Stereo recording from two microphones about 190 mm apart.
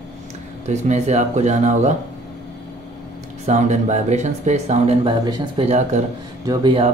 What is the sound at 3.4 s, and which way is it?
Speech, 35° right (ahead or behind).